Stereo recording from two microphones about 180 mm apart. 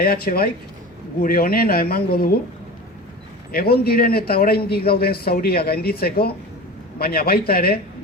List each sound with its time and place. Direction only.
0.0 s speech: 55° left (ahead or behind)
3.5 s speech: 60° left (ahead or behind)